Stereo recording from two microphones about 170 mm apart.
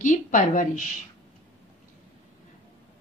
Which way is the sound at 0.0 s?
50° left (ahead or behind).